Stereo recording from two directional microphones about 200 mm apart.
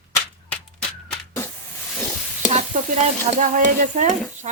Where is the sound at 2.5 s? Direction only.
35° right (ahead or behind).